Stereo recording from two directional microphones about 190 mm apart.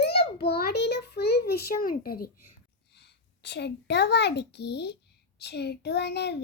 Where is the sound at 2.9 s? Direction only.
65° left (ahead or behind).